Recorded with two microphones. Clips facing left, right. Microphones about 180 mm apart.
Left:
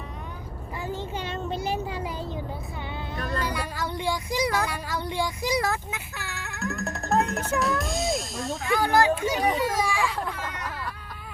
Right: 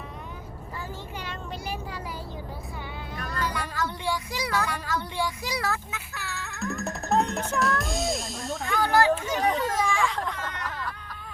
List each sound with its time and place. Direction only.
0.8 s a sound: 25° left (ahead or behind)
3.2 s vehicle: 30° left (ahead or behind)
3.4 s speech: 10° left (ahead or behind)
6.7 s speech: centre (ahead or behind)
8.6 s speech: 15° left (ahead or behind)